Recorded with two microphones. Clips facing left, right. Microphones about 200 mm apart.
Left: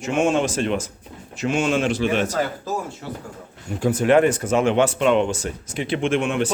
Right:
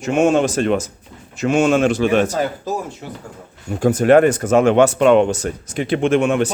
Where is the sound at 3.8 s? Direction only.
45° right (ahead or behind).